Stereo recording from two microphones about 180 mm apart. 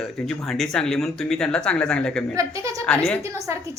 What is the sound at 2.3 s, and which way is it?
Speech, 15° right (ahead or behind).